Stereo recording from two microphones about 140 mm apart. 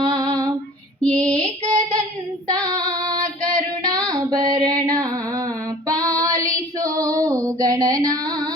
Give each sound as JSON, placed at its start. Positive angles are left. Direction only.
{"t": 0.0, "sound": "female singing", "side_deg": -30}
{"t": 1.0, "sound": "female singing", "side_deg": 10}
{"t": 3.4, "sound": "female singing", "side_deg": 5}
{"t": 4.1, "sound": "child singing", "side_deg": -25}
{"t": 4.9, "sound": "a sound", "side_deg": -25}
{"t": 5.9, "sound": "child singing", "side_deg": -25}